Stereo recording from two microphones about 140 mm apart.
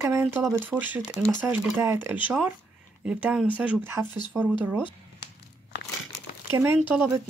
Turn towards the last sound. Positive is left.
turn(degrees=-20)  # may be behind; listen again after turning